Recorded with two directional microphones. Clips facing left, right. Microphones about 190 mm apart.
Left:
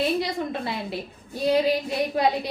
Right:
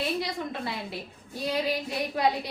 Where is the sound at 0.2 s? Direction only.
25° left (ahead or behind).